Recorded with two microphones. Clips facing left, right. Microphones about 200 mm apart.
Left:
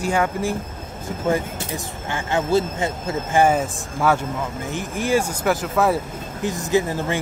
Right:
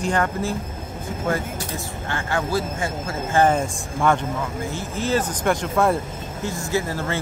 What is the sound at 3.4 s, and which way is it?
Speech, 5° left (ahead or behind).